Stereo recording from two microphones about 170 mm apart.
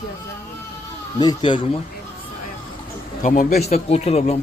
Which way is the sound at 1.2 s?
25° left (ahead or behind).